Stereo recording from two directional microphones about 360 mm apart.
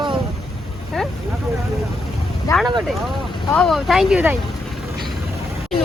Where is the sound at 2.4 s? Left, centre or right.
Centre.